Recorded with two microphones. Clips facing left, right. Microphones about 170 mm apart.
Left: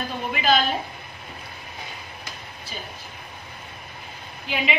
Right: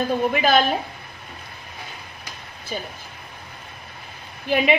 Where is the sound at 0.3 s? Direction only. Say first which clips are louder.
Left 3 dB; 50° right (ahead or behind).